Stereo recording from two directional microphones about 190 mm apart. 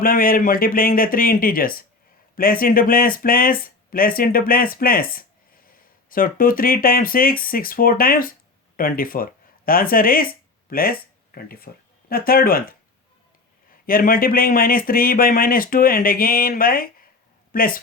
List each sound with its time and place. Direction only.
0.0 s speech: 50° left (ahead or behind)
13.8 s speech: 50° left (ahead or behind)